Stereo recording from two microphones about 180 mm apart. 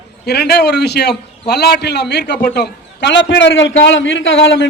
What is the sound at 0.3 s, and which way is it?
A man's voice, 65° left (ahead or behind).